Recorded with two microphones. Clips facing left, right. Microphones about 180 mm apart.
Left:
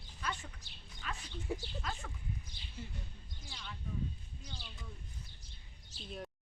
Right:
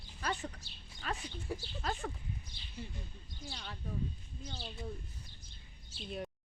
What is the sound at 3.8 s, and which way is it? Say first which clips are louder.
Speech: right 1 dB; 35° right (ahead or behind).